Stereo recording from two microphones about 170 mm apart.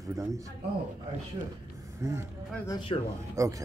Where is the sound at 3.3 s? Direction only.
20° right (ahead or behind).